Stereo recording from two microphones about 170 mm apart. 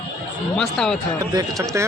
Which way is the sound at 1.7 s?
15° right (ahead or behind).